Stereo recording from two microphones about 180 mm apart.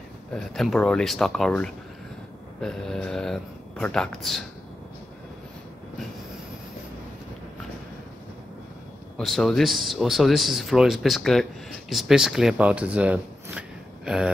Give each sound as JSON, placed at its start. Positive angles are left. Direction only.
{"t": 0.3, "sound": "speech", "side_deg": 0}
{"t": 9.1, "sound": "speech", "side_deg": 0}